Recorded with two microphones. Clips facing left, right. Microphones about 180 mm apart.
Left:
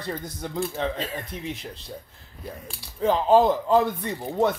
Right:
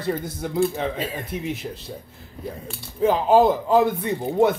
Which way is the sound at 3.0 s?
10° right (ahead or behind).